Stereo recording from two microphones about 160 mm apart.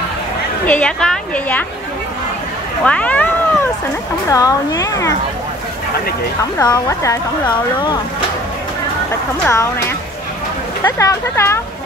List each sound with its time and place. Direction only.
0.7 s a woman's voice: 5° left (ahead or behind)
2.8 s cat: 10° left (ahead or behind)
4.3 s speech: 20° left (ahead or behind)
6.6 s speech: 20° left (ahead or behind)
9.4 s a woman's voice: 20° left (ahead or behind)